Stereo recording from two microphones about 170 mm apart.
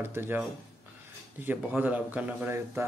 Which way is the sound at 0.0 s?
10° right (ahead or behind).